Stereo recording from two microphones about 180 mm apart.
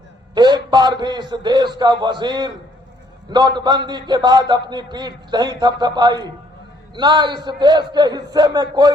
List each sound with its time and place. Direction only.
0.3 s a man's voice: 25° right (ahead or behind)